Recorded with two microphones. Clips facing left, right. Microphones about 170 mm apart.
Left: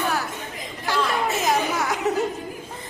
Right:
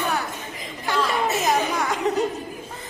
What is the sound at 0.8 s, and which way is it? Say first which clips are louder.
Chatter: right 1 dB; centre (ahead or behind).